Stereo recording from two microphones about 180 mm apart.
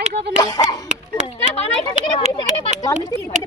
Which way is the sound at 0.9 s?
40° right (ahead or behind).